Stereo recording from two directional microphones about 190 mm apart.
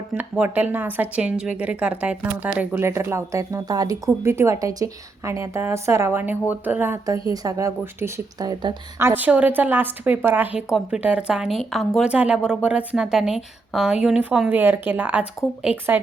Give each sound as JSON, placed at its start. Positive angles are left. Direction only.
{"t": 0.1, "sound": "a woman's voice", "side_deg": -10}